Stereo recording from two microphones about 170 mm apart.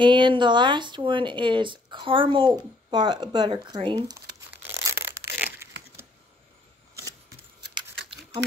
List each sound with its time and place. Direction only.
0.0 s speech: 30° right (ahead or behind)
5.2 s crumpling: 15° right (ahead or behind)